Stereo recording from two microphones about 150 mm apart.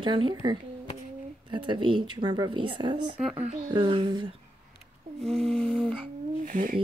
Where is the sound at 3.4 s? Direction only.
50° right (ahead or behind).